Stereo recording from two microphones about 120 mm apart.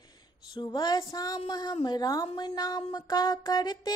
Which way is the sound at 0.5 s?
35° left (ahead or behind).